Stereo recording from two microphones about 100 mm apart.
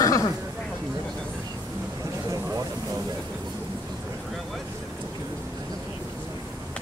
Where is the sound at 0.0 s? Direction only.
35° left (ahead or behind).